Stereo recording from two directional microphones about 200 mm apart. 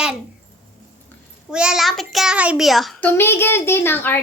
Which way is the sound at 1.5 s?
5° right (ahead or behind).